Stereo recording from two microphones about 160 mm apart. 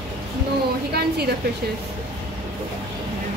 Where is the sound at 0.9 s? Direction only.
90° right.